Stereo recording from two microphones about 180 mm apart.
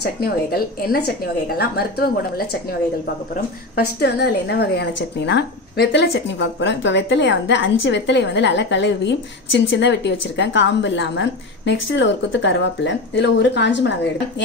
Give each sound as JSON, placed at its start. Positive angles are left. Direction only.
{"t": 0.0, "sound": "a woman's voice", "side_deg": 60}
{"t": 3.7, "sound": "a woman's voice", "side_deg": 65}